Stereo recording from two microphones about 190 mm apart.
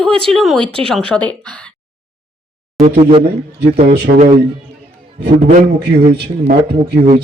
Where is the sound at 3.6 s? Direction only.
50° right (ahead or behind).